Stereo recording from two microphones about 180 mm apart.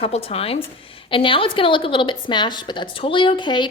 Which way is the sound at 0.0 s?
35° left (ahead or behind).